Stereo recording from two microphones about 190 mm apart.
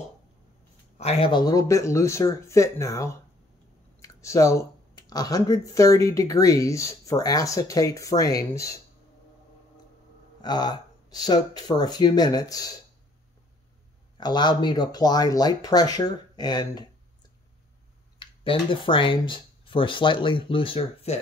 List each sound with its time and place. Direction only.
0.9 s speech: 35° left (ahead or behind); by 8.8 s 15° left (ahead or behind)
10.4 s speech: 20° left (ahead or behind)
14.1 s speech: 25° left (ahead or behind)
18.2 s speech: 25° left (ahead or behind)